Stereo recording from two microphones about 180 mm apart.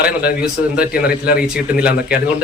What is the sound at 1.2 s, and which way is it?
Speech, 55° left (ahead or behind).